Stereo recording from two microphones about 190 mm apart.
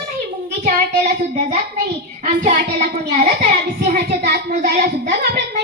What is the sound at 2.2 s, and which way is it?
Child singing, 35° right (ahead or behind).